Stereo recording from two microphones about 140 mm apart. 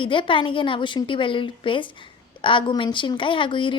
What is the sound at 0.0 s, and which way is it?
A woman's voice, 35° left (ahead or behind).